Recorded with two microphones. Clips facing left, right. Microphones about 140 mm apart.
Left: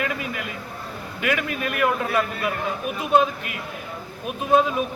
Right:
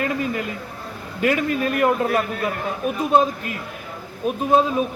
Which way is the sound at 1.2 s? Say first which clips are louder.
Right 5 dB; 35° right (ahead or behind).